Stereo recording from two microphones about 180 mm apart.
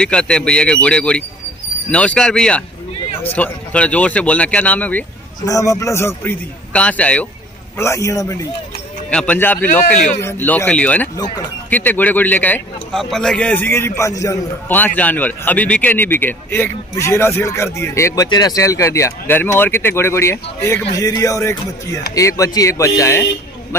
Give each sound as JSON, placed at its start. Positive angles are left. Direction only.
{"t": 0.0, "sound": "a man's voice", "side_deg": 5}
{"t": 5.4, "sound": "a man's voice", "side_deg": 20}
{"t": 11.1, "sound": "speech", "side_deg": 20}
{"t": 11.7, "sound": "a man's voice", "side_deg": 10}